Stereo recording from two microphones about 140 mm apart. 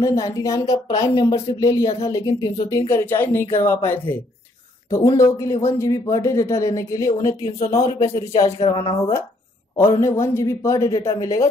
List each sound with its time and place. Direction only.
0.0 s a man's voice: 25° left (ahead or behind)
8.5 s a woman's voice: 45° left (ahead or behind)
9.8 s a man's voice: 20° left (ahead or behind)